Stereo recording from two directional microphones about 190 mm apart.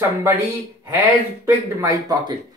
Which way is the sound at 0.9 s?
15° right (ahead or behind).